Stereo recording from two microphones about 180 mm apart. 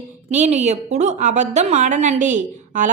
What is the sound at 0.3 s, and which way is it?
A woman's voice, 40° right (ahead or behind).